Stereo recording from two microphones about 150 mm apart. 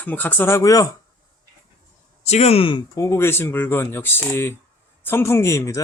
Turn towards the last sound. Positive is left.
turn(degrees=20)  # may be behind; listen again after turning